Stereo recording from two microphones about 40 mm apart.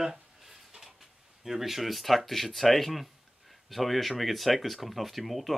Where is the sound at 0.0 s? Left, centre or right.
Centre.